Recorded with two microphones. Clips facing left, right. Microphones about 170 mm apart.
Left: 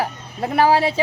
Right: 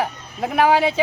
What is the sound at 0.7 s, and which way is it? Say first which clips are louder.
Speech: even; 30° left (ahead or behind).